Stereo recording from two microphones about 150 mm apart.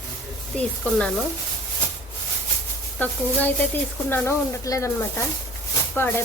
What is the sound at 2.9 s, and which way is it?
A woman's voice, 10° left (ahead or behind).